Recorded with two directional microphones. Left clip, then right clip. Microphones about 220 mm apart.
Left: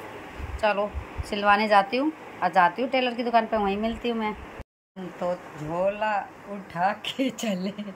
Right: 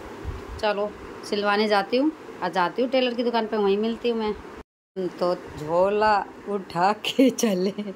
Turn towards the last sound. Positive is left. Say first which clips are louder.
# right 7 dB
turn(degrees=-15)  # may be behind; listen again after turning